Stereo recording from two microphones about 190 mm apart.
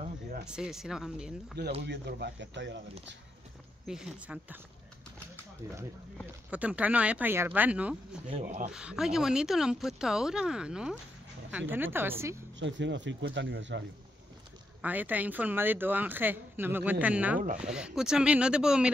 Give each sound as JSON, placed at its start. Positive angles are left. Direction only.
{"t": 0.5, "sound": "speech", "side_deg": -5}
{"t": 1.9, "sound": "speech", "side_deg": -60}
{"t": 3.8, "sound": "speech", "side_deg": -5}
{"t": 6.5, "sound": "a woman's voice", "side_deg": -5}
{"t": 8.3, "sound": "speech", "side_deg": -35}
{"t": 8.7, "sound": "a woman's voice", "side_deg": -5}
{"t": 12.5, "sound": "speech", "side_deg": -75}
{"t": 14.8, "sound": "a woman's voice", "side_deg": -10}